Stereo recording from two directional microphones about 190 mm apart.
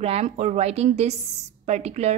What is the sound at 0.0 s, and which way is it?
A woman's voice, 35° right (ahead or behind).